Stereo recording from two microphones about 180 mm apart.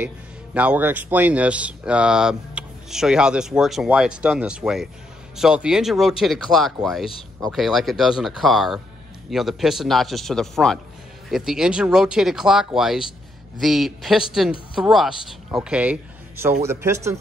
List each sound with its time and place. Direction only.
0.6 s a man's voice: 10° right (ahead or behind)